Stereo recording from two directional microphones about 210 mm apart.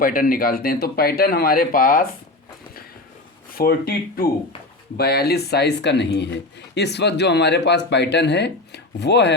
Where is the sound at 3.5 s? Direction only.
45° left (ahead or behind).